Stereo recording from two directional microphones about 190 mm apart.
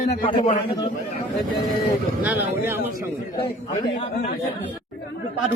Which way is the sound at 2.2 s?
10° right (ahead or behind).